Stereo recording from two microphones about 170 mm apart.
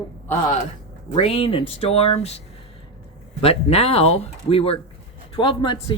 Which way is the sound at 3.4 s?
35° left (ahead or behind).